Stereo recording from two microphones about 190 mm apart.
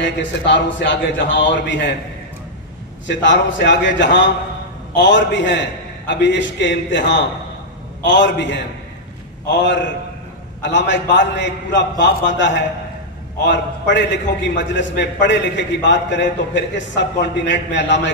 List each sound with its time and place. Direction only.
0.0 s a man's voice: 70° left (ahead or behind)
3.1 s a man's voice: 70° left (ahead or behind)